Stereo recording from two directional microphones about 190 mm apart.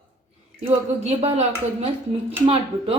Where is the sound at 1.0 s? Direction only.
35° right (ahead or behind).